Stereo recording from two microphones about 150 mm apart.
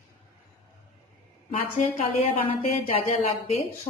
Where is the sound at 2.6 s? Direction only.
45° left (ahead or behind).